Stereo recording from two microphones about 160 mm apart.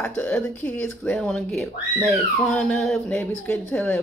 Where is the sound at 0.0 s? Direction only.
5° left (ahead or behind).